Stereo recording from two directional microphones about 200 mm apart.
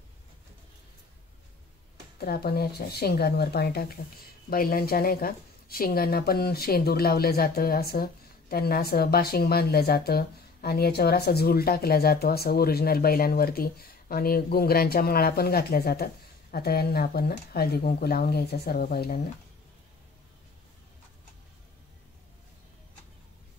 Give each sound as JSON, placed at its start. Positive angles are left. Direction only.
{"t": 2.1, "sound": "speech", "side_deg": 50}